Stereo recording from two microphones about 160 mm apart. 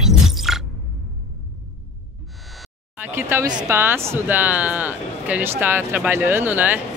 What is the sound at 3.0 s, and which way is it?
Speech, 15° right (ahead or behind).